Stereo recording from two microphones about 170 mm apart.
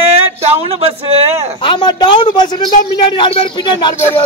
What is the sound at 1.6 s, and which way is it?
A man's voice, 30° left (ahead or behind).